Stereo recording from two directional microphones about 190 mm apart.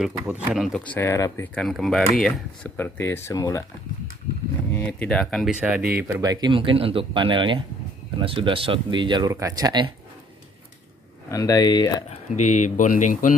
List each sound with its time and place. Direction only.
0.0 s speech: 5° right (ahead or behind)
0.9 s speech: 15° left (ahead or behind)
4.7 s speech: 10° left (ahead or behind); by 9.8 s 20° right (ahead or behind)
11.2 s speech: 20° left (ahead or behind)
12.1 s speech: 40° left (ahead or behind)